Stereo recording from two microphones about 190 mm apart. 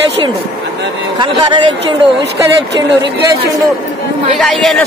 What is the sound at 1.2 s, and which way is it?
Speech, 25° right (ahead or behind).